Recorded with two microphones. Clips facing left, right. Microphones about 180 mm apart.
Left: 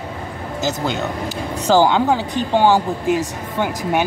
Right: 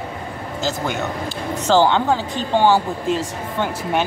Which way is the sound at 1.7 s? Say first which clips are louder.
Left 1 dB; 10° left (ahead or behind).